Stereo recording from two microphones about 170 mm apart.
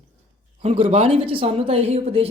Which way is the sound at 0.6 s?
40° right (ahead or behind).